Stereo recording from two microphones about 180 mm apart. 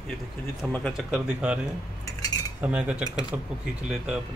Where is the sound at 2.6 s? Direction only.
5° right (ahead or behind).